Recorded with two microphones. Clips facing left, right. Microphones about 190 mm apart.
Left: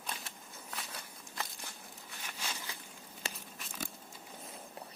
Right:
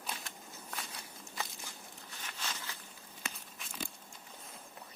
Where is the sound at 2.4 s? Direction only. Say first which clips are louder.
Even; 10° left (ahead or behind).